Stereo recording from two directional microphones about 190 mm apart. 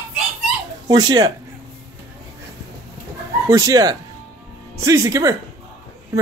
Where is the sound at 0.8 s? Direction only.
20° right (ahead or behind).